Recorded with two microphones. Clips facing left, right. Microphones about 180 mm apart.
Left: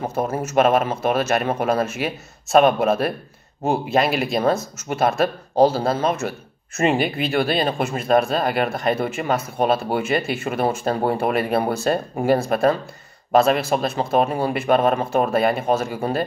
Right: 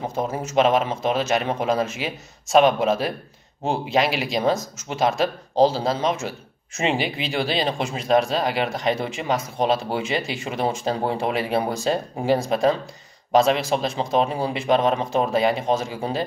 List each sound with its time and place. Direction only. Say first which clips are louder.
0.3 s speech: left 3 dB; 15° right (ahead or behind)
0.6 s speech: left 1 dB; 55° left (ahead or behind)